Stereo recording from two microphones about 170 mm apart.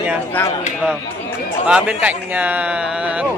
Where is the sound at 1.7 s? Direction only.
5° right (ahead or behind).